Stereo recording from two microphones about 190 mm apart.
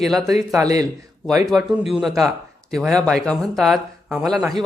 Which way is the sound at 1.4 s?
Centre (ahead or behind).